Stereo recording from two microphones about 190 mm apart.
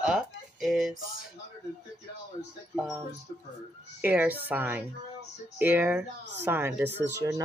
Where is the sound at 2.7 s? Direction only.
5° right (ahead or behind).